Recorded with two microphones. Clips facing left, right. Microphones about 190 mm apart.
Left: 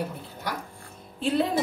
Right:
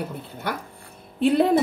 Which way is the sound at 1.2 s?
60° right (ahead or behind).